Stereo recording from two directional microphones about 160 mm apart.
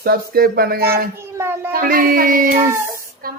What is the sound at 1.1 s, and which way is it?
Speech, 15° right (ahead or behind).